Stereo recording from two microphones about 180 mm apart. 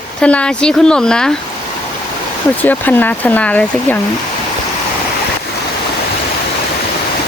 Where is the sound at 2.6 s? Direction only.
10° left (ahead or behind).